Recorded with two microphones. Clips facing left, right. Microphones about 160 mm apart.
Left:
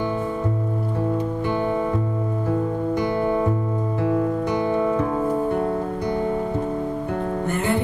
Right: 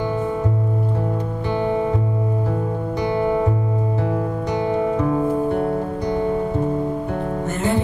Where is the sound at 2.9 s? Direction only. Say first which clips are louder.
Right 3 dB; 50° left (ahead or behind).